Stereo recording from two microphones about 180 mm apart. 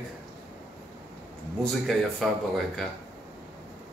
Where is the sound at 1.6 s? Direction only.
Centre (ahead or behind).